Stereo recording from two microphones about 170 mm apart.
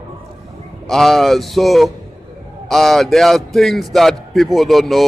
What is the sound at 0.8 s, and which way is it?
A man's voice, centre (ahead or behind).